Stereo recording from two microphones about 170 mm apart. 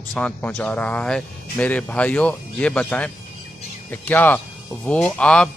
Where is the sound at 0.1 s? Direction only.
5° left (ahead or behind).